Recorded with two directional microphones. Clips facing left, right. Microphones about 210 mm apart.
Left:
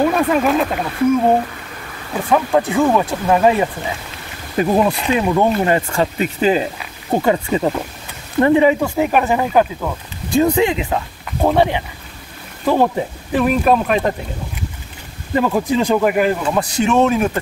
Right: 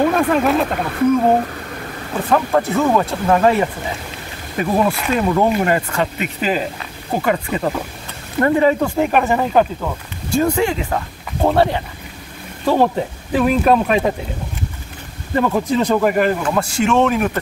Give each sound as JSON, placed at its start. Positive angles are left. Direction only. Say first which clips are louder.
{"t": 0.0, "sound": "speech", "louder": "even", "side_deg": 5}
{"t": 2.3, "sound": "speech", "louder": "left 1 dB", "side_deg": 15}
{"t": 4.7, "sound": "speech", "louder": "right 1 dB", "side_deg": 20}
{"t": 10.3, "sound": "speech", "louder": "left 2 dB", "side_deg": 20}
{"t": 12.6, "sound": "speech", "louder": "even", "side_deg": 0}
{"t": 15.3, "sound": "speech", "louder": "left 1 dB", "side_deg": 10}
{"t": 16.4, "sound": "speech", "louder": "even", "side_deg": 20}